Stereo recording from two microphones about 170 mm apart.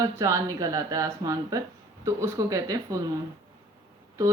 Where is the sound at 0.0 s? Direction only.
20° right (ahead or behind).